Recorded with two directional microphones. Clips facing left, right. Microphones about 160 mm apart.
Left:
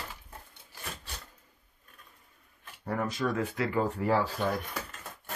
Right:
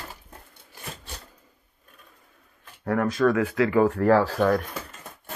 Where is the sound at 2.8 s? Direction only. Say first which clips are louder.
Right 9 dB; 80° right.